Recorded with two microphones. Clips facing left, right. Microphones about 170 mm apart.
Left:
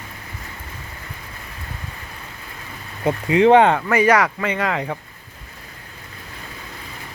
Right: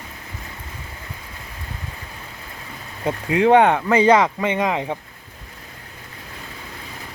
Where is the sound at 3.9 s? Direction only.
20° right (ahead or behind).